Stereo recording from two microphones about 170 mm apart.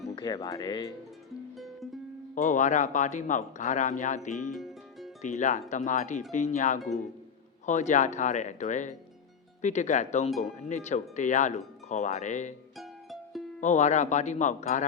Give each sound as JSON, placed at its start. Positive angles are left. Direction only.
{"t": 0.2, "sound": "speech", "side_deg": 25}
{"t": 1.5, "sound": "music", "side_deg": 0}
{"t": 2.3, "sound": "speech", "side_deg": 45}
{"t": 4.5, "sound": "music", "side_deg": 0}
{"t": 5.2, "sound": "speech", "side_deg": 45}
{"t": 12.7, "sound": "music", "side_deg": 0}
{"t": 13.6, "sound": "speech", "side_deg": 45}